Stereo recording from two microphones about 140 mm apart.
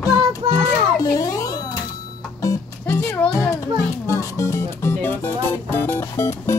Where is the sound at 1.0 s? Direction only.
25° left (ahead or behind).